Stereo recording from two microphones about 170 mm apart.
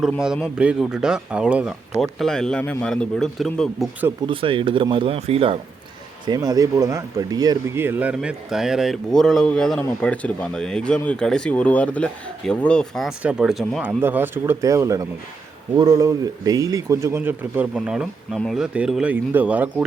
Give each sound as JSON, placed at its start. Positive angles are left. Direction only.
{"t": 0.0, "sound": "speech", "side_deg": -5}
{"t": 4.3, "sound": "speech", "side_deg": -30}
{"t": 6.2, "sound": "speech", "side_deg": -25}
{"t": 14.0, "sound": "speech", "side_deg": -10}